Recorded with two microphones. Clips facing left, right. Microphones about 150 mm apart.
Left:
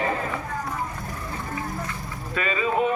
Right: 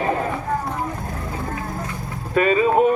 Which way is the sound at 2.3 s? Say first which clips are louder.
Right 8 dB; 45° right (ahead or behind).